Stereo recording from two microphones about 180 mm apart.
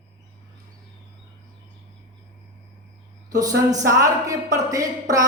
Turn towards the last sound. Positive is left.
turn(degrees=-20)  # may be behind; listen again after turning